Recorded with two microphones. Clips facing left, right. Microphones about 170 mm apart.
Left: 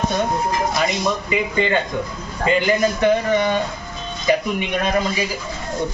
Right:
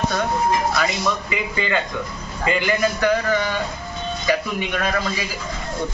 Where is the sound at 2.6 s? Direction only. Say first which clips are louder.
Left 2 dB; 25° left (ahead or behind).